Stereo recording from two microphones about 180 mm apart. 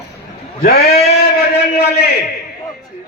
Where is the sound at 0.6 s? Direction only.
60° left (ahead or behind).